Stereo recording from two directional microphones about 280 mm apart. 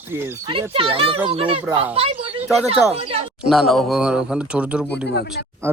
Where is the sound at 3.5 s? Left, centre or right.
Centre.